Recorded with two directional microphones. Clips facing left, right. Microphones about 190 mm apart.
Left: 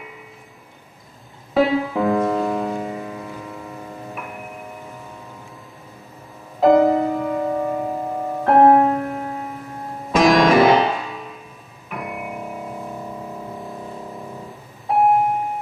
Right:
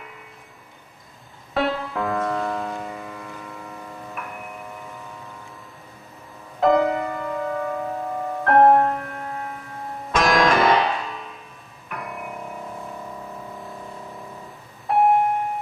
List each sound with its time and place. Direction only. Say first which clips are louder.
1.5 s music: left 6 dB; centre (ahead or behind)
6.6 s music: left 5 dB; centre (ahead or behind)
7.4 s music: left 4 dB; 15° left (ahead or behind)
8.5 s music: left 3 dB; centre (ahead or behind)
14.9 s a sound: left 1 dB; centre (ahead or behind)